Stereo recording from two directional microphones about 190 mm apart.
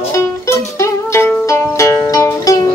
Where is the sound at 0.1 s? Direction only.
15° left (ahead or behind).